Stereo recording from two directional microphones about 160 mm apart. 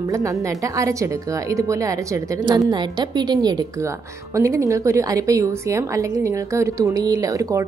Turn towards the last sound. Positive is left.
turn(degrees=-20)  # may be behind; listen again after turning